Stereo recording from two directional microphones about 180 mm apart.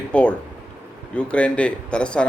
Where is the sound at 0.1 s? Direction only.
5° left (ahead or behind).